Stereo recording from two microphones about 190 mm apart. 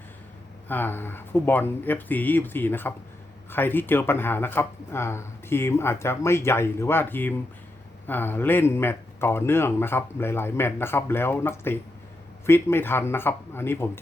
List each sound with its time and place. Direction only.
0.7 s speech: 10° left (ahead or behind)